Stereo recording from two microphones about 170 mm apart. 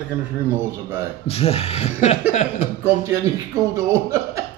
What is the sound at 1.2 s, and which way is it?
Speech, 35° left (ahead or behind).